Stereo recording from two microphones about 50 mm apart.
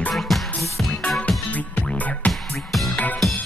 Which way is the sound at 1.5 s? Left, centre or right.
Left.